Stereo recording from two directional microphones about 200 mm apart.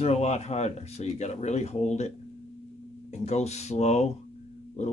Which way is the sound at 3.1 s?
35° left (ahead or behind).